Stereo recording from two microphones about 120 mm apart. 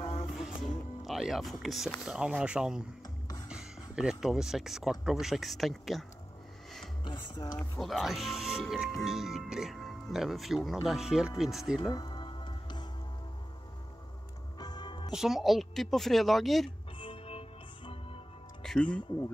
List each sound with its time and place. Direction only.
0.0 s music: 50° left (ahead or behind)
0.4 s speech: centre (ahead or behind)
7.1 s speech: 40° left (ahead or behind)
7.8 s speech: centre (ahead or behind)
11.9 s music: 40° left (ahead or behind)
14.6 s music: 35° left (ahead or behind)
15.1 s speech: 5° right (ahead or behind)
17.0 s music: 50° left (ahead or behind)
18.6 s music: 5° left (ahead or behind)